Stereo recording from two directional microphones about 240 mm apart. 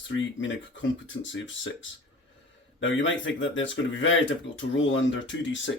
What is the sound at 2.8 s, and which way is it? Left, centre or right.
Speech, left.